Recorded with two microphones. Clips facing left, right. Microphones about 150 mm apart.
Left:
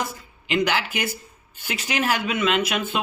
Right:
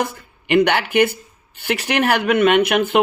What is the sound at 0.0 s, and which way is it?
Speech, 60° right (ahead or behind).